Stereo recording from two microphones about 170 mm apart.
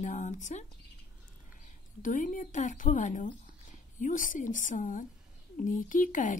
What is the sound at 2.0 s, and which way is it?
Speech, 50° left (ahead or behind).